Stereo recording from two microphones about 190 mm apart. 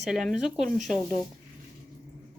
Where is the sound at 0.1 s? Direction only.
Centre (ahead or behind).